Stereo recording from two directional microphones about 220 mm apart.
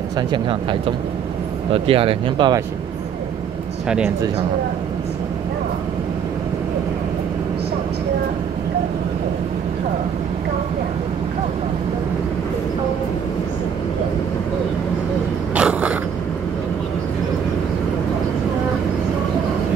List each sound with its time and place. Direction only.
0.3 s speech: 25° right (ahead or behind)
15.5 s vehicle: 5° right (ahead or behind)